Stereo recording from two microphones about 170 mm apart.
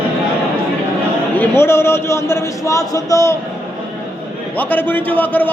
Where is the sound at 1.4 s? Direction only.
15° left (ahead or behind).